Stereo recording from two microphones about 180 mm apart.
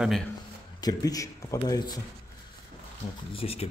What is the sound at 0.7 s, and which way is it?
A man's voice, 20° left (ahead or behind).